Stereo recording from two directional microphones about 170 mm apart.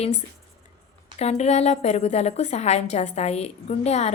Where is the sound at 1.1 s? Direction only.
40° left (ahead or behind).